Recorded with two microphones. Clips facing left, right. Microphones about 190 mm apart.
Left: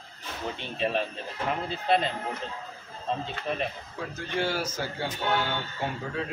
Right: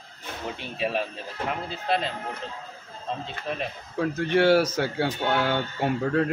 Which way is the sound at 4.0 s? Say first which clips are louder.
Right 9 dB; 65° right (ahead or behind).